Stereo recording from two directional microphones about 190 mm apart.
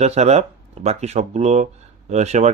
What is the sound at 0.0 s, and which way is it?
A man's voice, 35° right (ahead or behind).